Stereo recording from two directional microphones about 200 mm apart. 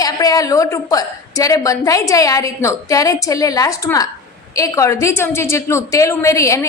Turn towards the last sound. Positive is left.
turn(degrees=15)  # may be behind; listen again after turning